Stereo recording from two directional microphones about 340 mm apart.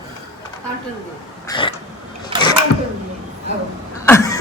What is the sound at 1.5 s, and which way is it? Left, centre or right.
Throat clearing, centre.